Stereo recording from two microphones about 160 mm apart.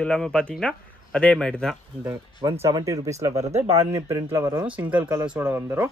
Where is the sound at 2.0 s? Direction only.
20° right (ahead or behind).